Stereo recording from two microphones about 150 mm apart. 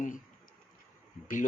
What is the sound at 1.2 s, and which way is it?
Speech, 60° left (ahead or behind).